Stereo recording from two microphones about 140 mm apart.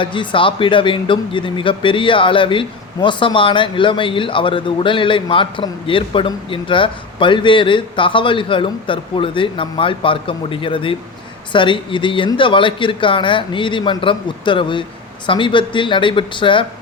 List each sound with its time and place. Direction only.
0.0 s speech: 35° left (ahead or behind)